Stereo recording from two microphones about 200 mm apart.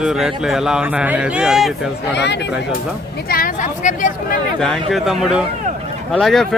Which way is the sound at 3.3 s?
45° left (ahead or behind).